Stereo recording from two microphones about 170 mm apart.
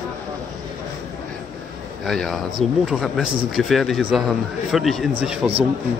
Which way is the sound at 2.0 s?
Centre (ahead or behind).